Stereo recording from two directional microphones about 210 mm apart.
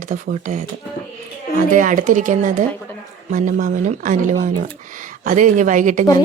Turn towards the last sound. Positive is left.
turn(degrees=-40)  # may be behind; listen again after turning